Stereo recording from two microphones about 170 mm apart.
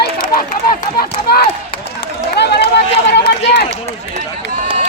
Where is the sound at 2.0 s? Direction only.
80° left.